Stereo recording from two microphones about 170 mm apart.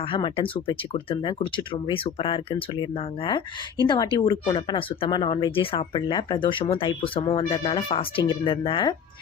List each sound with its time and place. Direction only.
0.1 s speech: 30° left (ahead or behind)
3.8 s speech: 25° left (ahead or behind)